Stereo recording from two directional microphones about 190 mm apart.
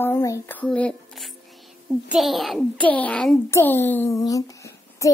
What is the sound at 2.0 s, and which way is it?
A child's voice, centre (ahead or behind).